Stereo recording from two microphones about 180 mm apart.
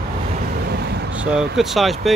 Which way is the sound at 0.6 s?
65° right (ahead or behind).